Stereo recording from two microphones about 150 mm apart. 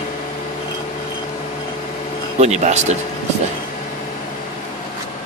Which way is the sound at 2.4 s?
50° right (ahead or behind).